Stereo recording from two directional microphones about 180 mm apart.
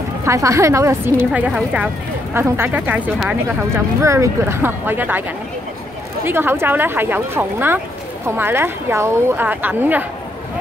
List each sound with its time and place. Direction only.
0.2 s speech: 15° right (ahead or behind)
6.2 s speech: 10° right (ahead or behind)